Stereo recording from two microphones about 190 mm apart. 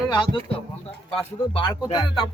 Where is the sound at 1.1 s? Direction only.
30° left (ahead or behind).